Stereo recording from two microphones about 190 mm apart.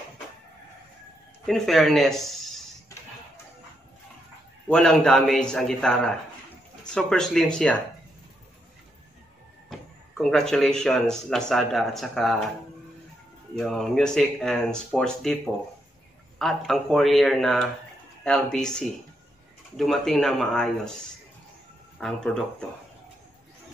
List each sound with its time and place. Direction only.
1.4 s speech: centre (ahead or behind)
2.9 s a sound: 15° left (ahead or behind)
4.6 s speech: 5° left (ahead or behind)
9.7 s speech: 5° left (ahead or behind)
13.6 s speech: centre (ahead or behind)
16.3 s speech: centre (ahead or behind)
22.0 s speech: 5° left (ahead or behind)